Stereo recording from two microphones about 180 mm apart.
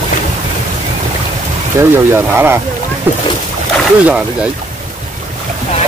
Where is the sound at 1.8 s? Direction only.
15° right (ahead or behind).